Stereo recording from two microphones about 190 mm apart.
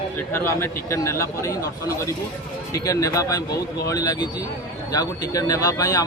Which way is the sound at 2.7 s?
15° left (ahead or behind).